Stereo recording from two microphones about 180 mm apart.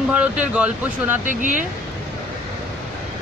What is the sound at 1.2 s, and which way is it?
Speech, 45° right (ahead or behind).